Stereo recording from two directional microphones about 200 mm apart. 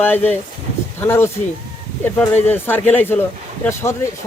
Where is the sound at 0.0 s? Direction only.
10° left (ahead or behind).